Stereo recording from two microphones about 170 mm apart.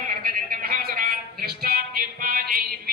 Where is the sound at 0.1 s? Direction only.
55° right (ahead or behind).